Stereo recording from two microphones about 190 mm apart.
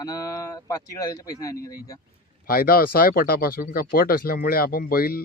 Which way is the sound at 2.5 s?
50° left (ahead or behind).